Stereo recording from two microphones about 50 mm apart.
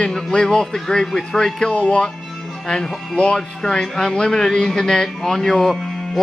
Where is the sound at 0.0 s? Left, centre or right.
Centre.